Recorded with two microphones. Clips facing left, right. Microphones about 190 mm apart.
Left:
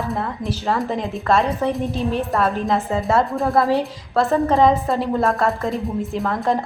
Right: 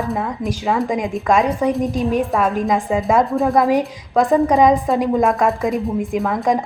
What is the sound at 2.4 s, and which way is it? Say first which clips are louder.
A woman's voice: right 2 dB; 10° right (ahead or behind).